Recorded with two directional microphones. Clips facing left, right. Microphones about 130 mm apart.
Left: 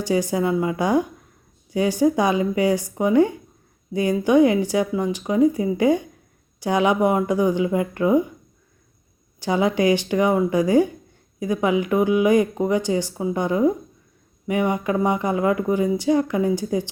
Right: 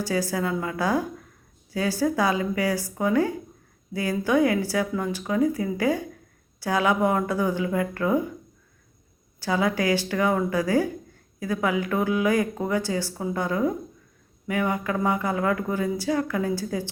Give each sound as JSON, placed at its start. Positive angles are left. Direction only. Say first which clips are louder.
{"t": 0.0, "sound": "speech", "louder": "left 5 dB", "side_deg": 20}
{"t": 9.4, "sound": "speech", "louder": "left 4 dB", "side_deg": 20}